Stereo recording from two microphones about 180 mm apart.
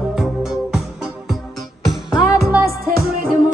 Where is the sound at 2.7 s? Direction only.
55° right (ahead or behind).